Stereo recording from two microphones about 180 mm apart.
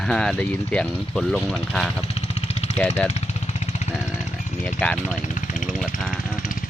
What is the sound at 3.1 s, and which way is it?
Vehicle, 40° left (ahead or behind).